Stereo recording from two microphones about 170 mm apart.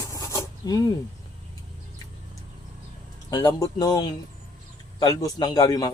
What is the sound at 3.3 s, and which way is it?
A man's voice, 25° left (ahead or behind).